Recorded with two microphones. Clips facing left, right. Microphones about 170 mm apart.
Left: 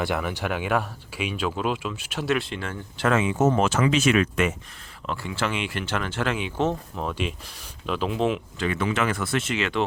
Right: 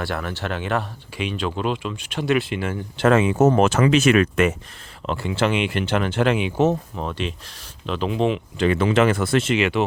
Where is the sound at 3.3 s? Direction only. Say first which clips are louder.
Right 5 dB; 40° right (ahead or behind).